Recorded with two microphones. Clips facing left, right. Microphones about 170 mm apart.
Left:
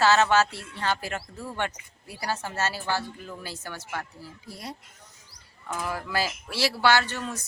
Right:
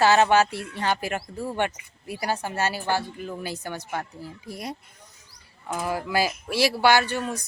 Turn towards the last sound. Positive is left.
turn(degrees=-15)  # may be behind; listen again after turning